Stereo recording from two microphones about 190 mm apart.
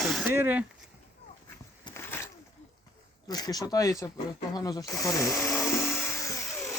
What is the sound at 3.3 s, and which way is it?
Speech, 20° left (ahead or behind).